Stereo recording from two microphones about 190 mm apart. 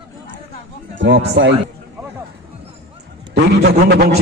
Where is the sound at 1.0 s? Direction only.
75° right (ahead or behind).